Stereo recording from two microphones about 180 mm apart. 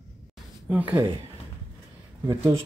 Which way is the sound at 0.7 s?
10° right (ahead or behind).